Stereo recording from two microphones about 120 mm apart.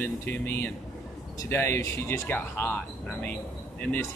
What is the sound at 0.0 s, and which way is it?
Speech, 20° left (ahead or behind).